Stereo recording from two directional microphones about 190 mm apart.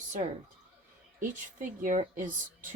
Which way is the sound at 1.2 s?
40° right (ahead or behind).